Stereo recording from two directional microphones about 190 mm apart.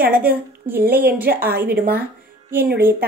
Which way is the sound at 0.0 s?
50° right (ahead or behind).